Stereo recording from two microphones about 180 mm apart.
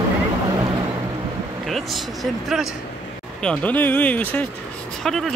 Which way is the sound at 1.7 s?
Centre (ahead or behind).